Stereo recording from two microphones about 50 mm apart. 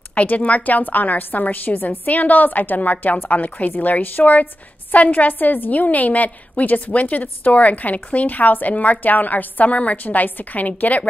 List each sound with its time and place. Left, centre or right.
0.1 s a woman's voice: left